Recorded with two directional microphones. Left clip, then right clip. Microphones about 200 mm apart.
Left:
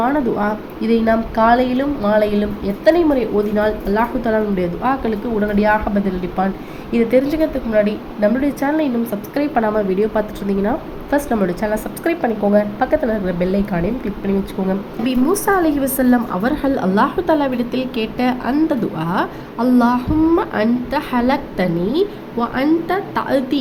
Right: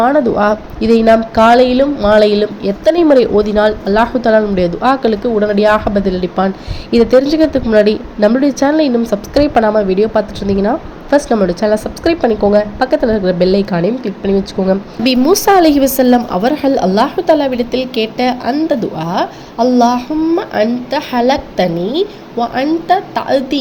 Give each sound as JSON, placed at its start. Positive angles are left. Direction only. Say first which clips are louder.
{"t": 0.0, "sound": "a woman's voice", "louder": "right 7 dB", "side_deg": -15}
{"t": 6.9, "sound": "a woman's voice", "louder": "right 6 dB", "side_deg": -10}